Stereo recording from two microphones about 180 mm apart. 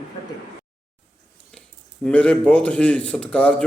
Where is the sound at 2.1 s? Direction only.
5° left (ahead or behind).